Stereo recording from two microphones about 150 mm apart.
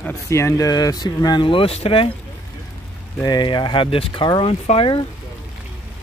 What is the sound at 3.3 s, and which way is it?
Speech, 30° left (ahead or behind).